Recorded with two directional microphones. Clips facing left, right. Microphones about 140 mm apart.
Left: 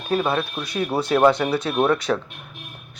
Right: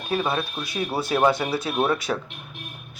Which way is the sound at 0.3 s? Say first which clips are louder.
Left 3 dB; 50° left (ahead or behind).